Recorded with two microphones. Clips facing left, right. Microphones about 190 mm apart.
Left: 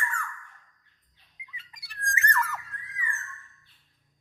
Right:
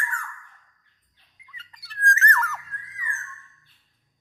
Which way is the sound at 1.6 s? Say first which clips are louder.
Right 9 dB; 15° left (ahead or behind).